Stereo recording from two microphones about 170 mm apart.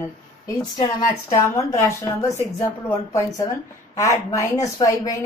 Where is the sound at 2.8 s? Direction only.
20° left (ahead or behind).